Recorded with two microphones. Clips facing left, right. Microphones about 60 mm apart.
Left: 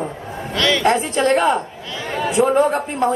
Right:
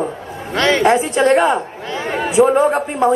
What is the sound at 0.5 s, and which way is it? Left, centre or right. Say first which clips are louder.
Speech: right 4 dB; right.